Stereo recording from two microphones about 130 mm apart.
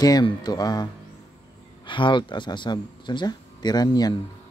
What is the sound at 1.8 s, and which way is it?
Speech, 40° left (ahead or behind).